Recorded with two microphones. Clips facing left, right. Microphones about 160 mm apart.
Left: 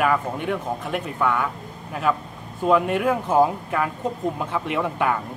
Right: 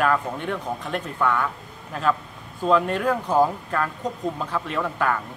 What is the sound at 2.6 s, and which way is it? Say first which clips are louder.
Speech: left 1 dB; 10° left (ahead or behind).